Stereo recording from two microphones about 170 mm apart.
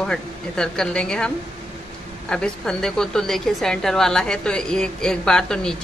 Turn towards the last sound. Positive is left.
turn(degrees=5)  # may be behind; listen again after turning